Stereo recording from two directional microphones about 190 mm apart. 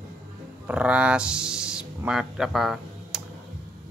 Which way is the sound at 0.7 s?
5° right (ahead or behind).